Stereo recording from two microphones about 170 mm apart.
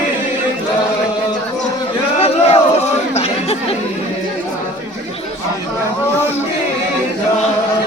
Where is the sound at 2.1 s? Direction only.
35° left (ahead or behind).